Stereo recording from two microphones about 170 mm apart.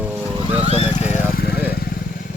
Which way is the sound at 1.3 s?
65° left (ahead or behind).